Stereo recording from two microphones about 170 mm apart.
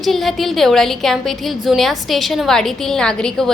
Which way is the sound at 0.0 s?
Centre (ahead or behind).